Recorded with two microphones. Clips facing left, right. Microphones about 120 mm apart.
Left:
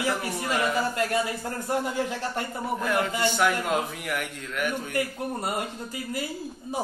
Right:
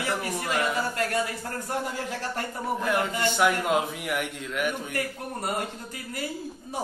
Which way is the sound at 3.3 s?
10° right (ahead or behind).